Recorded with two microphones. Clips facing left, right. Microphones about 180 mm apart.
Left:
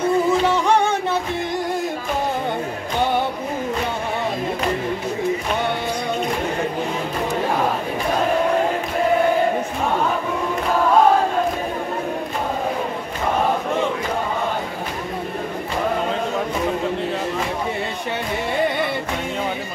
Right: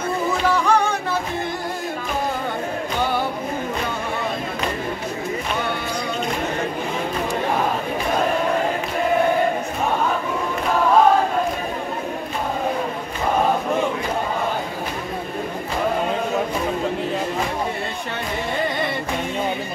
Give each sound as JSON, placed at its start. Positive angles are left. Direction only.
{"t": 0.5, "sound": "music", "side_deg": 20}